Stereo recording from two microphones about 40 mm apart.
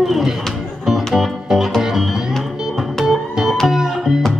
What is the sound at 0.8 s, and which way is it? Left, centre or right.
Music, centre.